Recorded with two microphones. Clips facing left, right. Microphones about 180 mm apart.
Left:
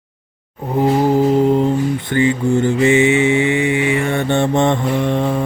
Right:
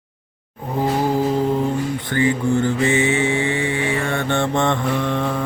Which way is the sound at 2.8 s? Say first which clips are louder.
Left 6 dB; 15° left (ahead or behind).